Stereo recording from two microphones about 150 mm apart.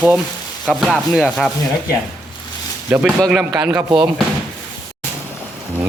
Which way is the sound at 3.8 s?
30° right (ahead or behind).